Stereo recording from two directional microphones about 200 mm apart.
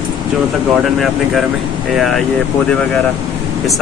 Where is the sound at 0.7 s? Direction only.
Centre (ahead or behind).